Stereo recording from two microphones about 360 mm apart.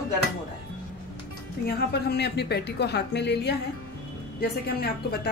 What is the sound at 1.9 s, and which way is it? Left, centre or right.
A woman's voice, left.